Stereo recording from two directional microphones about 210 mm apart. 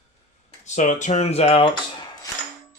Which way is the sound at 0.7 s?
35° left (ahead or behind).